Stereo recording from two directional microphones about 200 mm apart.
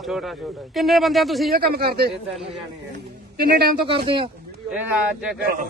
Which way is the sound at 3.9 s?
25° right (ahead or behind).